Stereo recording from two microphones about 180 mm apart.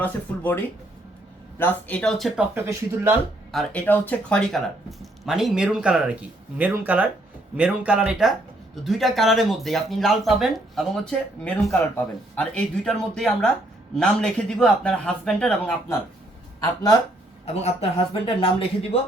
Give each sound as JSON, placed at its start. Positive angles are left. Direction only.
{"t": 0.0, "sound": "speech", "side_deg": 10}
{"t": 2.6, "sound": "speech", "side_deg": -15}
{"t": 3.5, "sound": "speech", "side_deg": 5}
{"t": 17.4, "sound": "speech", "side_deg": 35}